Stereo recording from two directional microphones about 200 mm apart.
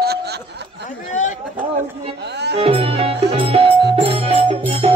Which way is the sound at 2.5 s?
30° right (ahead or behind).